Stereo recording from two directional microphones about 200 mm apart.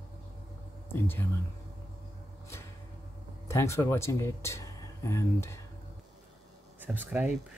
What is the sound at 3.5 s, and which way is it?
Speech, 15° left (ahead or behind).